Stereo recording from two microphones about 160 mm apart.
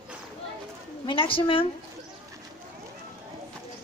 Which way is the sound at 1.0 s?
35° left (ahead or behind).